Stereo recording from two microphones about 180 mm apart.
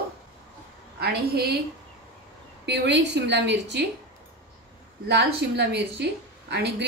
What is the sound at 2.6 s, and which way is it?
A woman's voice, 75° right (ahead or behind).